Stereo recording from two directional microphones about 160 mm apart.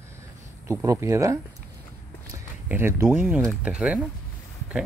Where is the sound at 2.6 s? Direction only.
15° right (ahead or behind).